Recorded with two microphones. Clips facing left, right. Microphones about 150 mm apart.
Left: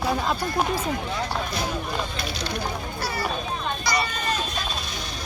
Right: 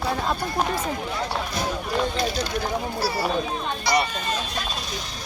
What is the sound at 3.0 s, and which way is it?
Speech, 35° right (ahead or behind).